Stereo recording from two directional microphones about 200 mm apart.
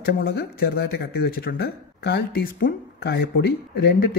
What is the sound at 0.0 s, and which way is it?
Speech, 50° left (ahead or behind).